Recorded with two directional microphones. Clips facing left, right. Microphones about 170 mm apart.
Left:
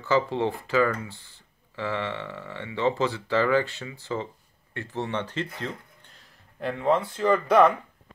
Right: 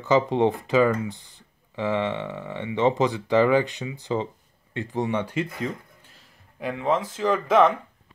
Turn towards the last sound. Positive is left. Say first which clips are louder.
# even
turn(degrees=0)  # may be behind; listen again after turning